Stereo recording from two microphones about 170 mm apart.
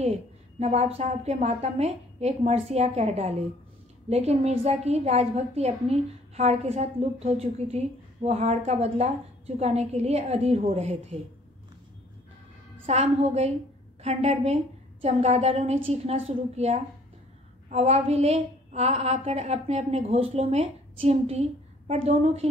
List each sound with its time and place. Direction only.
0.0 s a woman's voice: 40° right (ahead or behind)
12.8 s a woman's voice: 40° right (ahead or behind)